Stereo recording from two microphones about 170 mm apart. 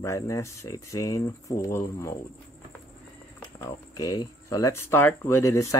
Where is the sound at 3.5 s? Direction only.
20° left (ahead or behind).